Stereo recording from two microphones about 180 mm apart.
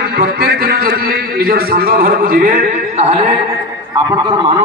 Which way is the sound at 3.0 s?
35° right (ahead or behind).